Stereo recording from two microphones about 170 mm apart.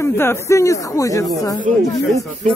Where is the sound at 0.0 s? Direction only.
15° left (ahead or behind).